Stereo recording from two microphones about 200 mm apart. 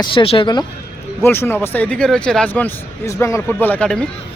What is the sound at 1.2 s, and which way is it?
Speech, 10° left (ahead or behind).